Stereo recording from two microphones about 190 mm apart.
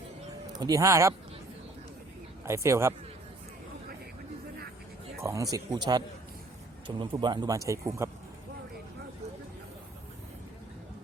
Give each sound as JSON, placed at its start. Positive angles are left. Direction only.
{"t": 0.5, "sound": "speech", "side_deg": -20}
{"t": 2.4, "sound": "speech", "side_deg": -15}
{"t": 5.2, "sound": "speech", "side_deg": -15}